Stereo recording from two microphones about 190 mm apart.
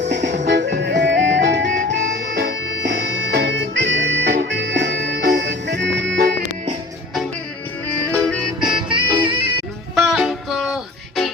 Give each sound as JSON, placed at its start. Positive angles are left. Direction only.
{"t": 0.1, "sound": "music", "side_deg": -65}
{"t": 8.1, "sound": "music", "side_deg": 5}
{"t": 8.7, "sound": "music", "side_deg": -25}
{"t": 9.9, "sound": "music", "side_deg": 0}